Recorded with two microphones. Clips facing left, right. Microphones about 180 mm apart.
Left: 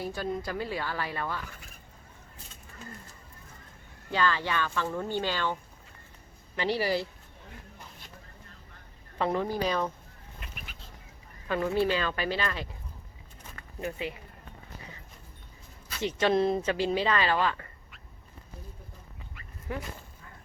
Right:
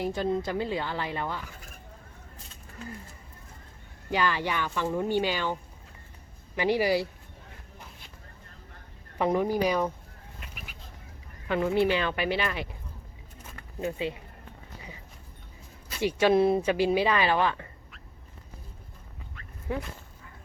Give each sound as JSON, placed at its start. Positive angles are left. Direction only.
{"t": 0.0, "sound": "speech", "side_deg": -20}
{"t": 4.1, "sound": "speech", "side_deg": -15}
{"t": 6.6, "sound": "speech", "side_deg": -15}
{"t": 9.1, "sound": "speech", "side_deg": -15}
{"t": 11.4, "sound": "speech", "side_deg": -20}
{"t": 13.8, "sound": "speech", "side_deg": -20}
{"t": 16.0, "sound": "speech", "side_deg": -10}
{"t": 19.7, "sound": "speech", "side_deg": -20}